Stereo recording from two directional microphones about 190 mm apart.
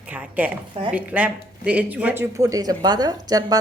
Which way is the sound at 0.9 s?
5° right (ahead or behind).